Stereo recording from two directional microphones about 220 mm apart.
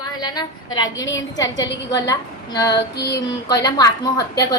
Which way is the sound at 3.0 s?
50° left (ahead or behind).